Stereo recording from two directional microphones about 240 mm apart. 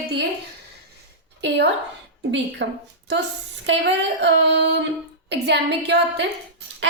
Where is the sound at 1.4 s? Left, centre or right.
Right.